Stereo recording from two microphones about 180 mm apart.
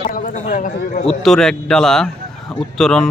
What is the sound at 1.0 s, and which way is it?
Speech, 5° left (ahead or behind).